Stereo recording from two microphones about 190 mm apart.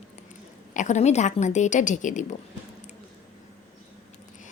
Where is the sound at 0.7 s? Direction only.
40° left (ahead or behind).